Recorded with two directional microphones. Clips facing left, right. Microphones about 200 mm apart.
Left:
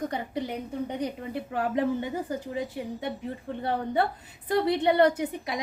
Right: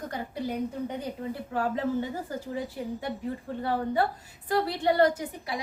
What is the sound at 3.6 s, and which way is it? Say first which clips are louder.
A woman's voice: even; 20° left (ahead or behind).